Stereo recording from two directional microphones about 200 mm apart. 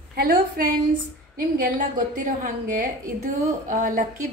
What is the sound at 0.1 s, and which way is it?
A woman's voice, 50° right (ahead or behind).